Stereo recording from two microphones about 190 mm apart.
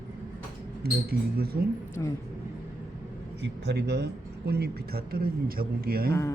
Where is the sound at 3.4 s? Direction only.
65° right (ahead or behind).